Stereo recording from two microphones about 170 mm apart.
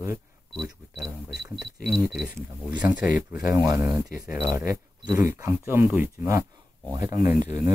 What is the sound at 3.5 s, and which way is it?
Speech, 20° right (ahead or behind).